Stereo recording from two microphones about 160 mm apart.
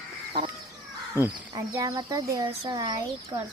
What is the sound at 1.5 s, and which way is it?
Speech, 20° right (ahead or behind).